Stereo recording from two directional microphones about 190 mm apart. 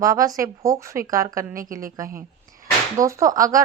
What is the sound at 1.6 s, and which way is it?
Speech, 45° right (ahead or behind).